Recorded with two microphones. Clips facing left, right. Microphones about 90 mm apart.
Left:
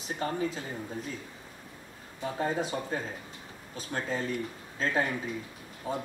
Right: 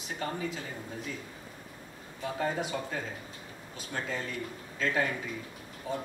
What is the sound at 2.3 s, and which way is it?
Speech, 30° left (ahead or behind).